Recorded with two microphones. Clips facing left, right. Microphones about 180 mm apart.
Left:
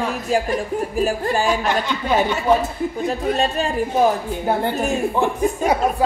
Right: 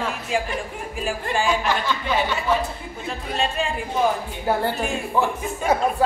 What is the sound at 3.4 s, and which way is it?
Speech, 40° left (ahead or behind).